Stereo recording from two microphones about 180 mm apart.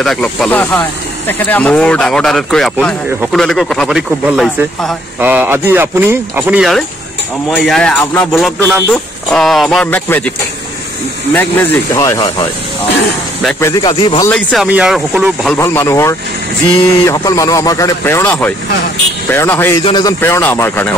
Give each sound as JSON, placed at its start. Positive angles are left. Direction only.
{"t": 0.0, "sound": "speech", "side_deg": 0}
{"t": 7.5, "sound": "speech", "side_deg": 5}
{"t": 11.3, "sound": "speech", "side_deg": 15}
{"t": 14.3, "sound": "speech", "side_deg": 5}
{"t": 14.7, "sound": "speech", "side_deg": -5}
{"t": 15.6, "sound": "speech", "side_deg": 15}
{"t": 19.8, "sound": "speech", "side_deg": 25}
{"t": 20.2, "sound": "speech", "side_deg": 15}